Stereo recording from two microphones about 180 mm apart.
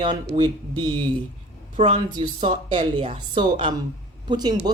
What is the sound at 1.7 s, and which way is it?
A woman's voice, 35° right (ahead or behind).